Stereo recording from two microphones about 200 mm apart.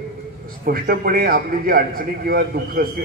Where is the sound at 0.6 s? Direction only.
45° right (ahead or behind).